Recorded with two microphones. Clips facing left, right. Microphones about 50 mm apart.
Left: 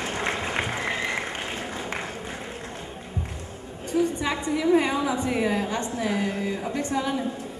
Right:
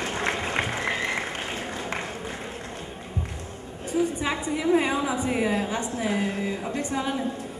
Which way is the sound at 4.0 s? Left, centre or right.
Centre.